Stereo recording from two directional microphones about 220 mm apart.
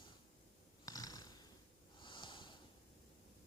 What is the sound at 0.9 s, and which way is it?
Snoring, 15° left (ahead or behind).